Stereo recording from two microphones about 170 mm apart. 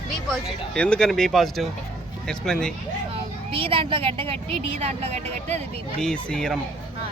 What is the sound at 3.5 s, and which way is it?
A woman's voice, 35° right (ahead or behind).